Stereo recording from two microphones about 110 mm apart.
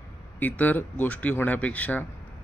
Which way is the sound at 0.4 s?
15° left (ahead or behind).